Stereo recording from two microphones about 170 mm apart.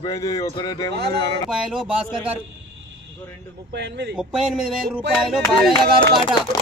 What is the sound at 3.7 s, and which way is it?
Speech, 80° right.